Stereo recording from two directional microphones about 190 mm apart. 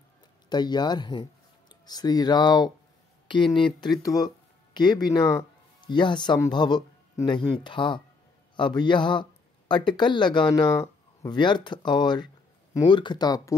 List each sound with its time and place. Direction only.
0.5 s speech: 20° left (ahead or behind)